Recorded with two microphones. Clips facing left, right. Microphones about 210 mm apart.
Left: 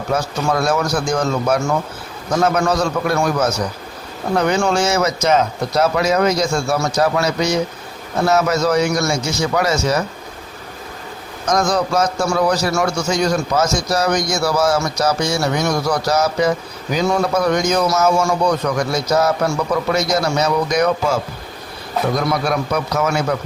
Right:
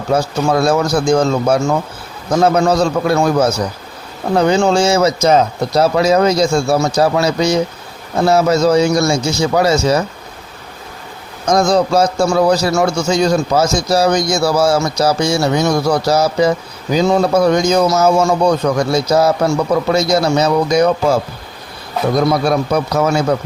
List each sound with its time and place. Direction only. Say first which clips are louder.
0.1 s a man's voice: right 5 dB; 30° right (ahead or behind)
11.4 s a man's voice: right 5 dB; 30° right (ahead or behind)
22.3 s speech: right 5 dB; 30° right (ahead or behind)